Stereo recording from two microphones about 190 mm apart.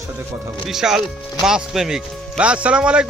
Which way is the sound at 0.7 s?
Centre (ahead or behind).